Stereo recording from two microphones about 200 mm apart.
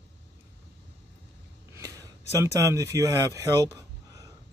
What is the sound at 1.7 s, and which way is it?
Speech, 15° right (ahead or behind).